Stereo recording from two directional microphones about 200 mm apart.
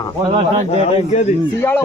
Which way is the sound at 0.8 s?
30° left (ahead or behind).